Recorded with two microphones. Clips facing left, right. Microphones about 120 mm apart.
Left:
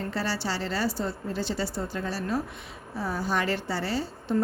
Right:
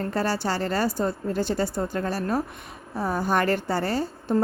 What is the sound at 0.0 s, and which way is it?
A woman's voice, 50° right (ahead or behind).